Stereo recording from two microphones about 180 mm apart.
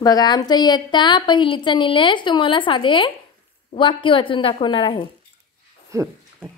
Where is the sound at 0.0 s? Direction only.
20° left (ahead or behind).